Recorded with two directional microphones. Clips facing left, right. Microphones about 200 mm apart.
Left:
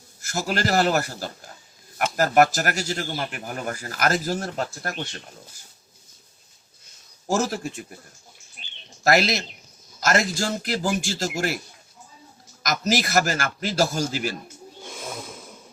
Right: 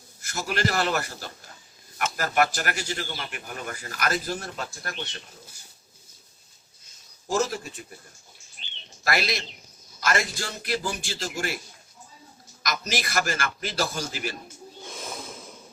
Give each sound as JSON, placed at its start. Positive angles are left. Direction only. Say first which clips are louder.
{"t": 0.2, "sound": "a man's voice", "louder": "left 2 dB", "side_deg": 45}
{"t": 7.3, "sound": "a man's voice", "louder": "left 2 dB", "side_deg": 45}
{"t": 9.0, "sound": "a man's voice", "louder": "left 7 dB", "side_deg": 45}
{"t": 12.6, "sound": "a man's voice", "louder": "left 6 dB", "side_deg": 45}
{"t": 14.8, "sound": "snoring", "louder": "left 2 dB", "side_deg": 0}